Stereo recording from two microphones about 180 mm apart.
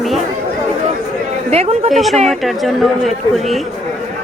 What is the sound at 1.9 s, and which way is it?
A woman's voice, centre (ahead or behind).